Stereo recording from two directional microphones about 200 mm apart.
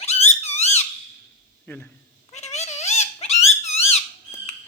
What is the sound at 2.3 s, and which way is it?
Cat, 35° left (ahead or behind).